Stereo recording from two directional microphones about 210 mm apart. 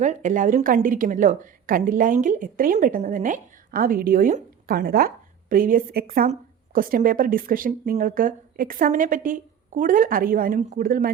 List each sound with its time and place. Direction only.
0.0 s a woman's voice: 35° right (ahead or behind)